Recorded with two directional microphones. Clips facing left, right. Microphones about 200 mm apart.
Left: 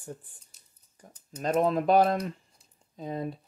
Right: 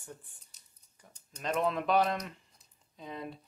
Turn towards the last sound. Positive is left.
turn(degrees=40)  # may be behind; listen again after turning